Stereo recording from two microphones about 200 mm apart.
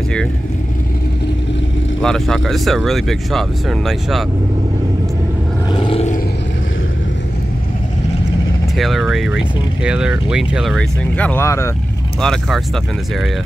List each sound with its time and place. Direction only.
2.0 s speech: centre (ahead or behind)
5.7 s a sound: 25° left (ahead or behind)
8.7 s speech: centre (ahead or behind)
12.2 s speech: centre (ahead or behind)